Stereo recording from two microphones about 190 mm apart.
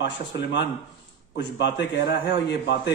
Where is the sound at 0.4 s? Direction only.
65° left (ahead or behind).